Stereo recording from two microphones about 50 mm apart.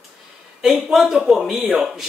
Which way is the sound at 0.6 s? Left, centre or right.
Centre.